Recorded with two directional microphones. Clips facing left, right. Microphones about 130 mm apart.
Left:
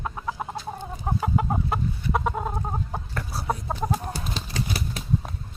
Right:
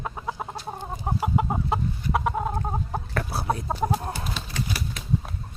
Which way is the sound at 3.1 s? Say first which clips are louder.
Right 6 dB; 60° right (ahead or behind).